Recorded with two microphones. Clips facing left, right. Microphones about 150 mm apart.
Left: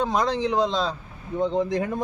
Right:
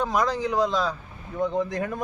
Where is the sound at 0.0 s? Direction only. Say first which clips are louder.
Left 1 dB; 25° left (ahead or behind).